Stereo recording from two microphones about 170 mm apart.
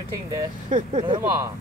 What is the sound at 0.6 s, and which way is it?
Speech, 45° right (ahead or behind).